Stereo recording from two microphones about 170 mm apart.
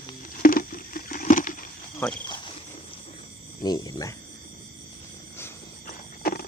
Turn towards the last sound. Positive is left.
turn(degrees=60)  # may be behind; listen again after turning